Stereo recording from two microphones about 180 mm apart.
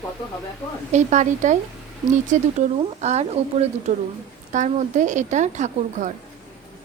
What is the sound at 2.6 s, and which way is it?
A woman's voice, 40° right (ahead or behind).